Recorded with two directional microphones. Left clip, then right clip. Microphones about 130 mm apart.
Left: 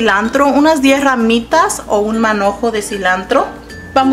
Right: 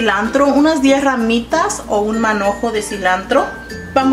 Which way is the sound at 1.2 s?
55° left (ahead or behind).